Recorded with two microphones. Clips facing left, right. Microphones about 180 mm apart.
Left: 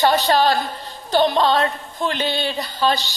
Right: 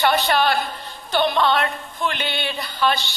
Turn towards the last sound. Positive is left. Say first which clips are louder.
# left 1 dB
turn(degrees=35)  # may be behind; listen again after turning